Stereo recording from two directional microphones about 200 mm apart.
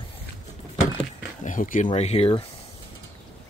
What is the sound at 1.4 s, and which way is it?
Speech, 40° left (ahead or behind).